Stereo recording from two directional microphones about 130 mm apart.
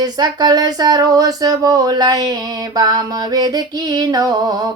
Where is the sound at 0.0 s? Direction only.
30° right (ahead or behind).